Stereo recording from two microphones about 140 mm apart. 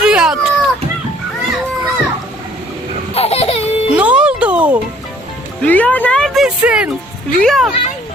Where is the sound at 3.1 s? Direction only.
45° left (ahead or behind).